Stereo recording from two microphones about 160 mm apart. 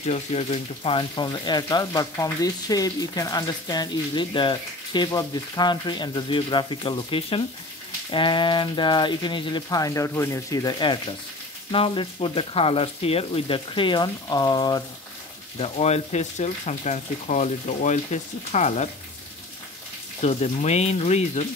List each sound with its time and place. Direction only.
0.0 s speech: 40° left (ahead or behind); by 14.8 s 25° left (ahead or behind)
15.6 s speech: 40° left (ahead or behind)
20.2 s speech: 40° left (ahead or behind)